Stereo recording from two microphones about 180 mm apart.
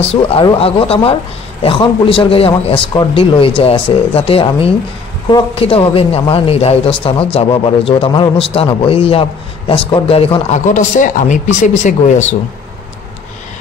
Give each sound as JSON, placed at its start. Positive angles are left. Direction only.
{"t": 0.1, "sound": "a man's voice", "side_deg": 30}